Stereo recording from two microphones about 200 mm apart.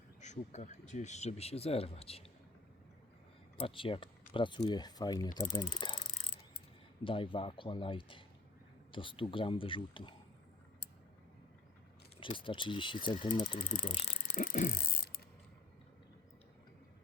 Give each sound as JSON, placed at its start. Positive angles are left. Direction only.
{"t": 0.2, "sound": "speech", "side_deg": 35}
{"t": 3.6, "sound": "speech", "side_deg": 25}
{"t": 7.0, "sound": "speech", "side_deg": 25}
{"t": 12.2, "sound": "speech", "side_deg": 25}
{"t": 13.1, "sound": "speech", "side_deg": 35}